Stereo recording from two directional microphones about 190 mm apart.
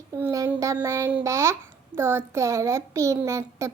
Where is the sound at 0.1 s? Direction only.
20° right (ahead or behind).